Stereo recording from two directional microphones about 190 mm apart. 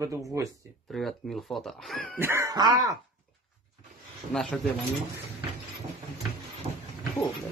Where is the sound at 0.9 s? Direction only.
Centre (ahead or behind).